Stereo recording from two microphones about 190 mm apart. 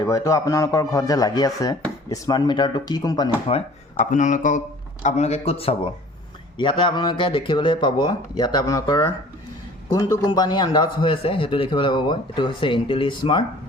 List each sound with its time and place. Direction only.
0.0 s a man's voice: 15° left (ahead or behind)
3.9 s a man's voice: 40° left (ahead or behind)